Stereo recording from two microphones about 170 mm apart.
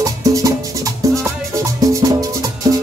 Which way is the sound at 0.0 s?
20° right (ahead or behind).